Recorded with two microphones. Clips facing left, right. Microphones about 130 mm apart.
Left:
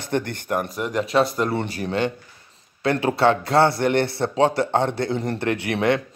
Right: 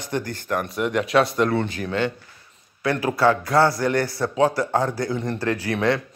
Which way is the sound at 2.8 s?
25° left (ahead or behind).